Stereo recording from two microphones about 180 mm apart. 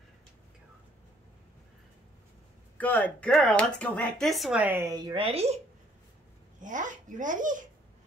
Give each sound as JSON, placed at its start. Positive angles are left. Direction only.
{"t": 2.8, "sound": "speech", "side_deg": 10}
{"t": 6.6, "sound": "speech", "side_deg": -45}